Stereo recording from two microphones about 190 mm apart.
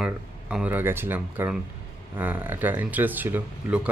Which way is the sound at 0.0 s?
5° right (ahead or behind).